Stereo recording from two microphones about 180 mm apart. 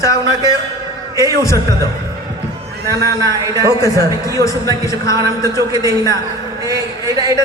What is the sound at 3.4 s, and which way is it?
Speech, 20° right (ahead or behind).